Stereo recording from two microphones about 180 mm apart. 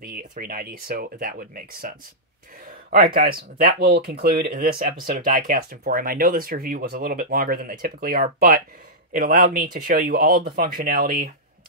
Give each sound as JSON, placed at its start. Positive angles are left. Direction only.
{"t": 0.0, "sound": "speech", "side_deg": -50}
{"t": 3.2, "sound": "speech", "side_deg": -55}